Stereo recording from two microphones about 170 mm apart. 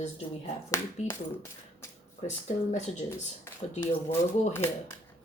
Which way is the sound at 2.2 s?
40° left (ahead or behind).